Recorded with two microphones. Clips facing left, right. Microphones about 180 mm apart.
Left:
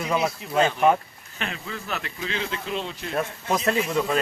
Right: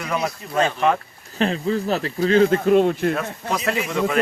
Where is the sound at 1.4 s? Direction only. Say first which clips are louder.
Right 12 dB; 35° right (ahead or behind); by 3.2 s 55° right (ahead or behind).